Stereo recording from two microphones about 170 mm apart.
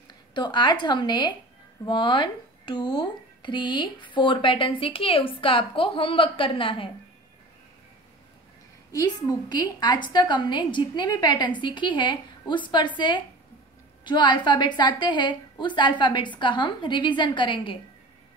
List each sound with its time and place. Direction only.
0.3 s a woman's voice: 25° left (ahead or behind)
8.9 s a woman's voice: 20° left (ahead or behind)